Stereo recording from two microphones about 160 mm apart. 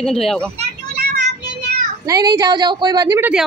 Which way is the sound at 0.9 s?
90° right.